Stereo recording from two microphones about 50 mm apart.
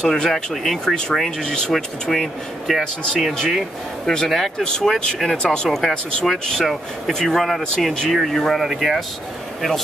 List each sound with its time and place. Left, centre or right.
0.0 s speech: centre
4.0 s speech: centre
4.3 s speech: centre
4.6 s speech: centre
5.8 s speech: centre